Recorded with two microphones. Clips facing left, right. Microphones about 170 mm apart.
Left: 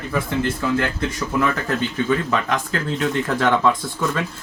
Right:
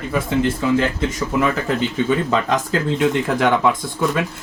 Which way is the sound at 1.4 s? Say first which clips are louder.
Right 2 dB; 20° right (ahead or behind).